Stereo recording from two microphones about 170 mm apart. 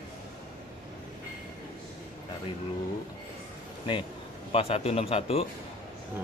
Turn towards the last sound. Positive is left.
turn(degrees=35)  # may be behind; listen again after turning